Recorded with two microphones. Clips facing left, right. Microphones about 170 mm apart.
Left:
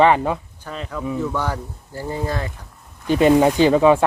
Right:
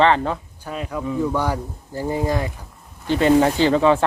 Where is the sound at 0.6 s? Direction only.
10° right (ahead or behind).